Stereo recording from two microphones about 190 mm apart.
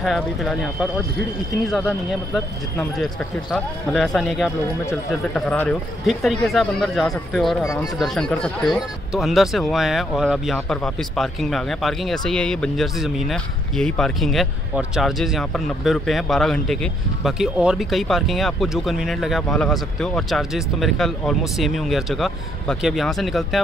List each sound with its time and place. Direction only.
0.0 s speech: centre (ahead or behind)
1.7 s speech: centre (ahead or behind)
7.6 s speech: 20° left (ahead or behind)
8.0 s speech: 5° left (ahead or behind)